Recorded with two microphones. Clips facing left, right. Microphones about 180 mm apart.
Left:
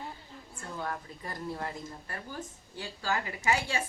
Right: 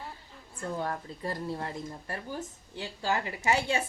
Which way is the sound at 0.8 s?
30° right (ahead or behind).